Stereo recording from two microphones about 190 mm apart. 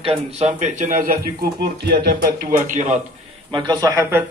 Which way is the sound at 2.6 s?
40° right (ahead or behind).